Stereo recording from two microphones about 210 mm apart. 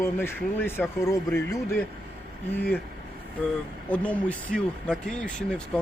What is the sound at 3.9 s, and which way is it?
Speech, 5° left (ahead or behind).